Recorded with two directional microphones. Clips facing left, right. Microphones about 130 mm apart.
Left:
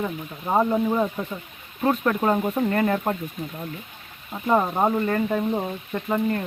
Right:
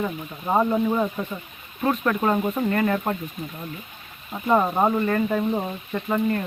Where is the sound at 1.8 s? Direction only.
25° left (ahead or behind).